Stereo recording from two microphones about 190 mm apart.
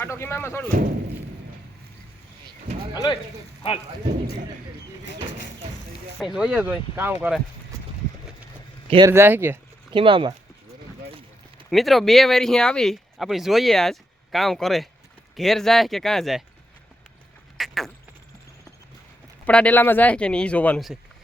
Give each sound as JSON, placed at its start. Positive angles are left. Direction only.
{"t": 0.0, "sound": "speech", "side_deg": 15}
{"t": 2.9, "sound": "speech", "side_deg": 20}
{"t": 6.1, "sound": "speech", "side_deg": -5}
{"t": 9.0, "sound": "speech", "side_deg": -15}
{"t": 9.9, "sound": "speech", "side_deg": -25}
{"t": 11.7, "sound": "speech", "side_deg": 0}
{"t": 17.6, "sound": "speech", "side_deg": 0}
{"t": 19.5, "sound": "speech", "side_deg": 5}